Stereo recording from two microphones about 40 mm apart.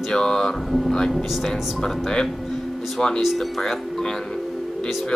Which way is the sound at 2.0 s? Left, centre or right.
Centre.